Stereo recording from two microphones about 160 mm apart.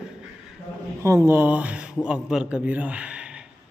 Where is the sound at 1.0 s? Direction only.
15° right (ahead or behind).